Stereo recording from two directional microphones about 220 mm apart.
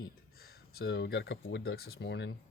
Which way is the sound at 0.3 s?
45° left (ahead or behind).